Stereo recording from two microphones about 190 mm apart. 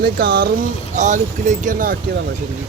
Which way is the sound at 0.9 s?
40° right (ahead or behind).